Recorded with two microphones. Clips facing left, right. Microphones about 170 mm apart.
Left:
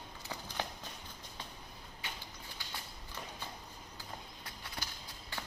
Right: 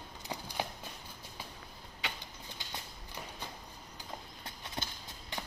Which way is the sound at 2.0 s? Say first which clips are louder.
Right 5 dB; 80° right.